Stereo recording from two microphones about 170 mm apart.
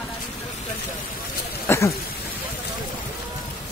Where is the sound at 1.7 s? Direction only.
15° left (ahead or behind).